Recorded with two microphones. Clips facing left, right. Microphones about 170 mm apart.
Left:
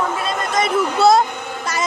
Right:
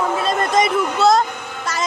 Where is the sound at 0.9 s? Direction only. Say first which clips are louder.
Left 2 dB; 10° left (ahead or behind).